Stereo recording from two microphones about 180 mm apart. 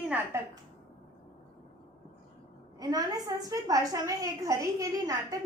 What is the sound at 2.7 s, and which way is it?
A woman's voice, 20° right (ahead or behind).